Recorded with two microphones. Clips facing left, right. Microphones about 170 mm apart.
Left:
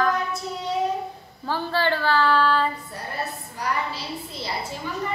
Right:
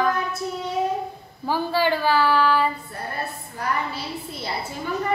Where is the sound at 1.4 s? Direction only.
10° right (ahead or behind).